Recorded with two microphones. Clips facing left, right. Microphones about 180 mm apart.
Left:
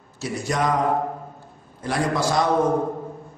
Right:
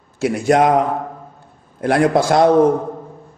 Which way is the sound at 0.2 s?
55° right (ahead or behind).